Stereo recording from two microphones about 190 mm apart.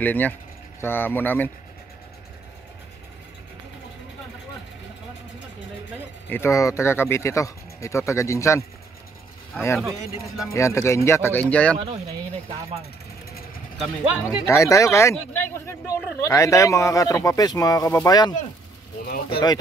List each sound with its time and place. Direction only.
0.0 s speech: 10° left (ahead or behind)
6.2 s speech: 10° left (ahead or behind)
9.8 s speech: centre (ahead or behind)
10.5 s speech: 15° left (ahead or behind)
14.1 s speech: 5° right (ahead or behind)
14.4 s speech: 15° left (ahead or behind)
19.0 s speech: 55° left (ahead or behind)